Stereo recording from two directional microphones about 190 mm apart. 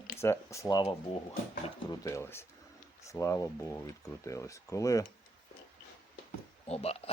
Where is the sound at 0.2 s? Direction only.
15° left (ahead or behind).